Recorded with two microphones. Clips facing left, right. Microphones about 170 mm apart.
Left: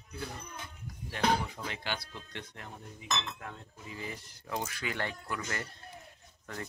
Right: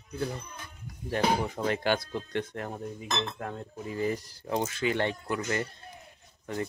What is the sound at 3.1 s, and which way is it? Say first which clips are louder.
Speech: right 3 dB; 35° right (ahead or behind).